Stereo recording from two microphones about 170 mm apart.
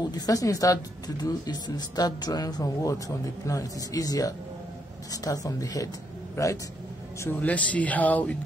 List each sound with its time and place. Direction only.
0.0 s a man's voice: 20° left (ahead or behind)